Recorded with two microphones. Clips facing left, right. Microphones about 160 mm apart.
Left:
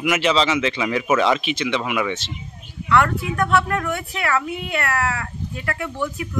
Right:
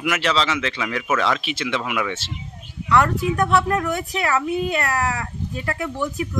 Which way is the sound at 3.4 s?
15° right (ahead or behind).